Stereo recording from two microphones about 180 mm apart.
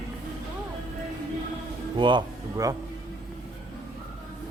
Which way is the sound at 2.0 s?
25° right (ahead or behind).